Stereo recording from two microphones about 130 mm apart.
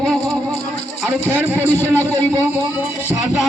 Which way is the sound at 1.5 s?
15° left (ahead or behind).